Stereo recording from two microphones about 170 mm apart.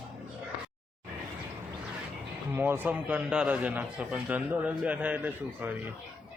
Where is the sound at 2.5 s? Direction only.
10° right (ahead or behind).